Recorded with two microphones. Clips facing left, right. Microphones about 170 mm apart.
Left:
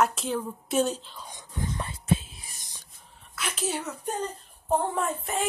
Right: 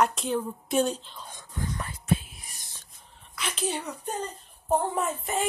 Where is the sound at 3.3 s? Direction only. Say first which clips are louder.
Even; 5° left (ahead or behind).